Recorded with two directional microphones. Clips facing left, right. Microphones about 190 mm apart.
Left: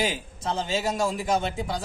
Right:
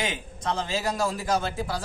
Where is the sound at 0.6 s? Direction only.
Centre (ahead or behind).